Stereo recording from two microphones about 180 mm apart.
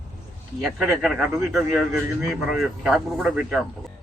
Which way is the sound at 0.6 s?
Centre (ahead or behind).